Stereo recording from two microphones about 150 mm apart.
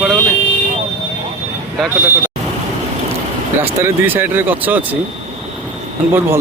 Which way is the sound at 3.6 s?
15° right (ahead or behind).